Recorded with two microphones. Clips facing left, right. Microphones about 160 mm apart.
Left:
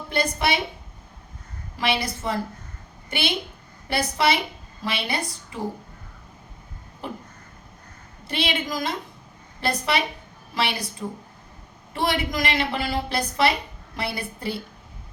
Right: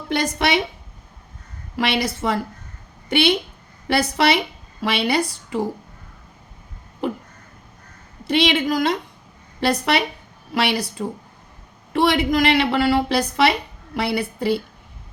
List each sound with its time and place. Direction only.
0.1 s a woman's voice: 85° right
1.7 s a woman's voice: 75° right (ahead or behind)
8.3 s a woman's voice: 70° right (ahead or behind)